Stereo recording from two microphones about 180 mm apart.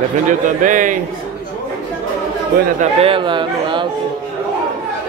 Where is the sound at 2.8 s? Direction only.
35° right (ahead or behind).